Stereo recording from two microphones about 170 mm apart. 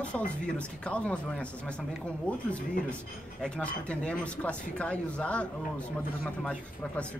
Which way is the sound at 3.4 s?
5° left (ahead or behind).